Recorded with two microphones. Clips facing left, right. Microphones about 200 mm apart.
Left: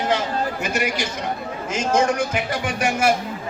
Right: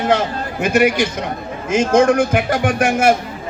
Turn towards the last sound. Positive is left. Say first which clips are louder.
# right 6 dB
turn(degrees=-50)  # may be behind; listen again after turning